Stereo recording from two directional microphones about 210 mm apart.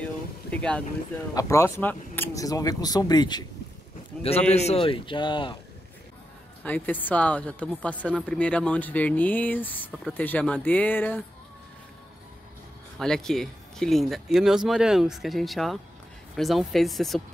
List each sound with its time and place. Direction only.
0.0 s boat: 5° left (ahead or behind)
1.3 s a woman's voice: 15° left (ahead or behind)
4.2 s a man's voice: 30° left (ahead or behind)
6.6 s a woman's voice: 10° left (ahead or behind)
13.0 s speech: centre (ahead or behind)